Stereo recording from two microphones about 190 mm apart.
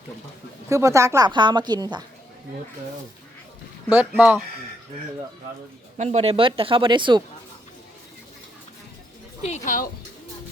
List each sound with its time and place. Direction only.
0.7 s speech: 15° right (ahead or behind)
3.8 s speech: 10° right (ahead or behind)
6.0 s speech: 35° right (ahead or behind)
9.4 s speech: 40° left (ahead or behind)